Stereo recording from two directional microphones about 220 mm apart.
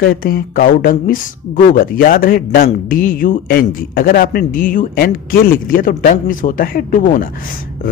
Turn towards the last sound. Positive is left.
turn(degrees=40)  # may be behind; listen again after turning